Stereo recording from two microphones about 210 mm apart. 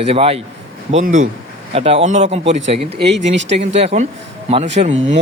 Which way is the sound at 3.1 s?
60° right (ahead or behind).